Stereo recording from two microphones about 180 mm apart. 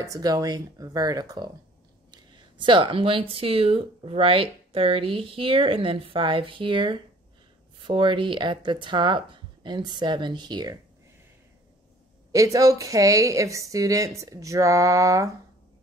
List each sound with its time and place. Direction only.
0.0 s speech: 20° right (ahead or behind)
12.3 s a woman's voice: 20° right (ahead or behind)